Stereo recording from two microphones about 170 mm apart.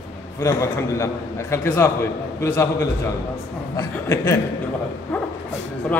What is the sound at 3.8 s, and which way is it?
Speech, 20° left (ahead or behind).